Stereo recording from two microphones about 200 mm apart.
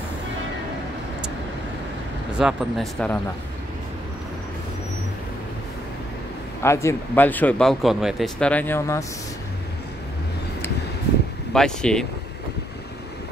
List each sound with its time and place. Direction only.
2.3 s speech: centre (ahead or behind)
6.6 s speech: 15° left (ahead or behind)
11.5 s speech: 5° left (ahead or behind)